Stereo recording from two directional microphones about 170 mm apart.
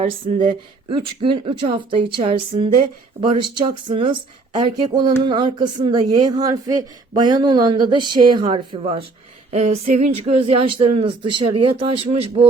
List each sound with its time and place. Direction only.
0.0 s speech: 45° right (ahead or behind)
0.9 s speech: 30° right (ahead or behind)